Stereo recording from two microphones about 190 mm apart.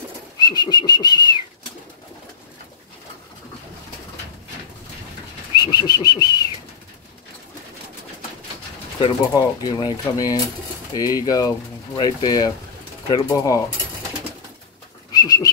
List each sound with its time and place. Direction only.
0.4 s speech: 20° left (ahead or behind)
5.6 s whistling: 20° left (ahead or behind)
9.0 s speech: 20° left (ahead or behind)
15.1 s whistling: 20° left (ahead or behind)